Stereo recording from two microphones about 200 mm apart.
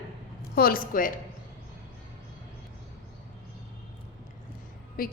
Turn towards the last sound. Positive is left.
turn(degrees=45)  # may be behind; listen again after turning